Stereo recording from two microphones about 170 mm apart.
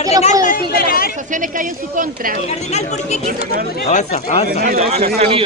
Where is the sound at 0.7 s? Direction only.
60° left (ahead or behind).